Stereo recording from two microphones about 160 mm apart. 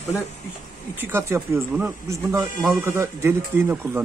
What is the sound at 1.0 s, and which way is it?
Speech, 15° right (ahead or behind).